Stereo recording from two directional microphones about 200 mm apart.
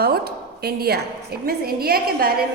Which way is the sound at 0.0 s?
50° right (ahead or behind).